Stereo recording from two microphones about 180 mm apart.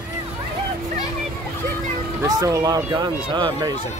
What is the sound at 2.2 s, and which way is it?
Speech, 20° right (ahead or behind).